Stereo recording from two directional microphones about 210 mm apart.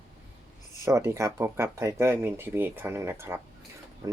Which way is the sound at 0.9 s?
15° right (ahead or behind).